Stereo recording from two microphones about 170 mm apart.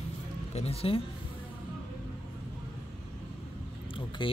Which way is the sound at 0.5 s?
35° left (ahead or behind).